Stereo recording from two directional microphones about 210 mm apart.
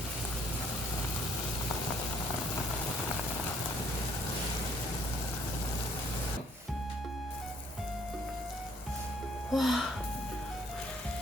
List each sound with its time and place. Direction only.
9.5 s music: centre (ahead or behind)